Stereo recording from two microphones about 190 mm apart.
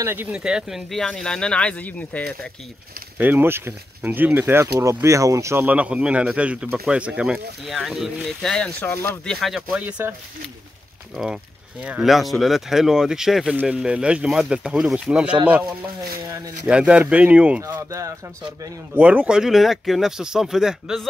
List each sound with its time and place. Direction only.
0.0 s speech: 10° right (ahead or behind); by 2.3 s 5° left (ahead or behind)
3.2 s speech: 10° right (ahead or behind)
11.8 s speech: 5° right (ahead or behind)